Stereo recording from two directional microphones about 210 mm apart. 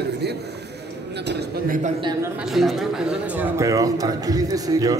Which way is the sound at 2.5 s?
Centre (ahead or behind).